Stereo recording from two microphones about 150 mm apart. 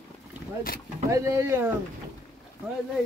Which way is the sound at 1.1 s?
20° right (ahead or behind).